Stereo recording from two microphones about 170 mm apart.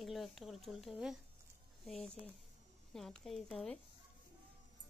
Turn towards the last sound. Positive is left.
turn(degrees=5)  # may be behind; listen again after turning